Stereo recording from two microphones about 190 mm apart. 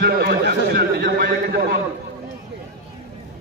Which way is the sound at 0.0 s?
55° right (ahead or behind).